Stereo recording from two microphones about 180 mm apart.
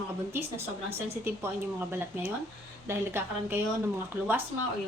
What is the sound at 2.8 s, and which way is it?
A woman's voice, 10° right (ahead or behind).